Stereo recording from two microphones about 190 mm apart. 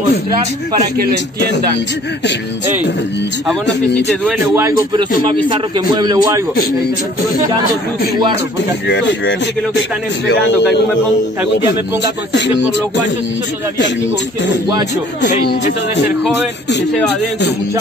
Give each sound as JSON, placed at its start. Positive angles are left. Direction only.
{"t": 4.1, "sound": "a man's voice", "side_deg": 0}
{"t": 4.6, "sound": "a man's voice", "side_deg": -15}
{"t": 8.8, "sound": "speech", "side_deg": 65}
{"t": 12.3, "sound": "speech", "side_deg": 70}